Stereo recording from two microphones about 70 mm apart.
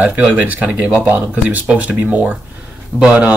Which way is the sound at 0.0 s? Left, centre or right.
Right.